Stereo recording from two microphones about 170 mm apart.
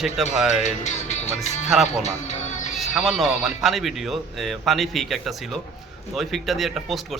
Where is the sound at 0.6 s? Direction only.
45° left (ahead or behind).